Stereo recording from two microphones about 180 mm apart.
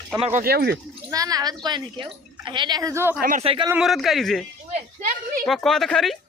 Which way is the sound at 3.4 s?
30° right (ahead or behind).